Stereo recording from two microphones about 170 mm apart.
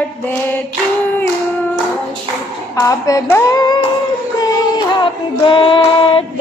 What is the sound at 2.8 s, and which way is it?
Speech, 20° left (ahead or behind).